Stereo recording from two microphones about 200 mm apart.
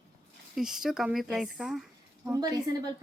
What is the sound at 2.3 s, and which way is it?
Speech, 20° right (ahead or behind).